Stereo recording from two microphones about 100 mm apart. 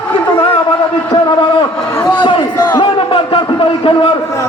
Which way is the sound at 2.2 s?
55° left (ahead or behind).